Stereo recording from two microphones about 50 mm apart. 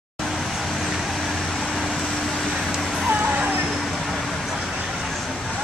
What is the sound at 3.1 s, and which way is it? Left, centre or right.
Music, right.